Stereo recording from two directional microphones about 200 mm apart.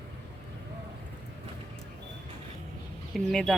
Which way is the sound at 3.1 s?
Centre (ahead or behind).